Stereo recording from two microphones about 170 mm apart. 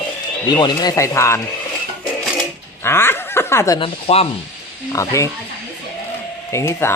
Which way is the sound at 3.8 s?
35° left (ahead or behind).